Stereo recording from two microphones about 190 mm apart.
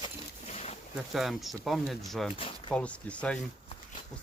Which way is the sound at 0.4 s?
35° left (ahead or behind).